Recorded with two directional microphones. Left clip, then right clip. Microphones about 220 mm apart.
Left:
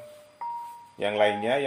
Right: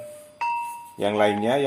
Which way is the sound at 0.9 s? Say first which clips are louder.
Right 2 dB; 25° right (ahead or behind).